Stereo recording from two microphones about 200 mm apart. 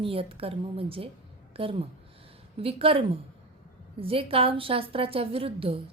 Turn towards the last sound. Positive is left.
turn(degrees=-25)  # may be behind; listen again after turning